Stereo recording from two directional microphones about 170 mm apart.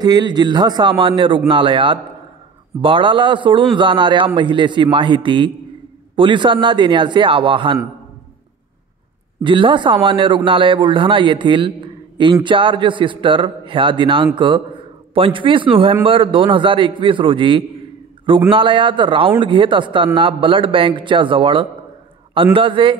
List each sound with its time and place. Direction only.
0.0 s a man's voice: 25° right (ahead or behind)
9.4 s a man's voice: 30° right (ahead or behind)